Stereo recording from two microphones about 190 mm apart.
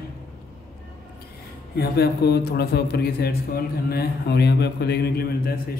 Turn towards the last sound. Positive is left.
turn(degrees=55)  # may be behind; listen again after turning